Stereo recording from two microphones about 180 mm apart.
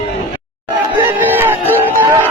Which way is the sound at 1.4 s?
10° right (ahead or behind).